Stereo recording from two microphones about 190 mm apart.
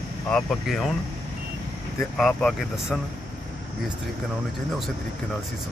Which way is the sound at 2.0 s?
Centre (ahead or behind).